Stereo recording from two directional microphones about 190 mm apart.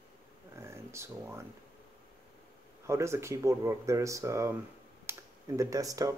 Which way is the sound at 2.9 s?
15° right (ahead or behind).